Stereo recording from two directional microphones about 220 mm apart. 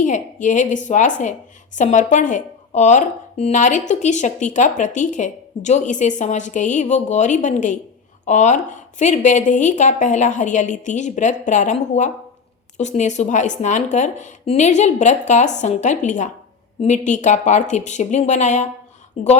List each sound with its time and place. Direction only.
0.0 s a woman's voice: 35° left (ahead or behind)